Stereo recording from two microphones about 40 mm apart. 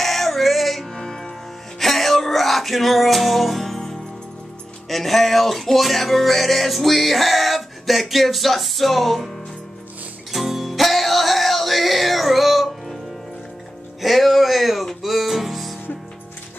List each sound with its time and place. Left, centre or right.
0.0 s music: centre
0.9 s music: centre
4.8 s music: centre
10.3 s music: centre
14.0 s a sound: centre
14.9 s music: centre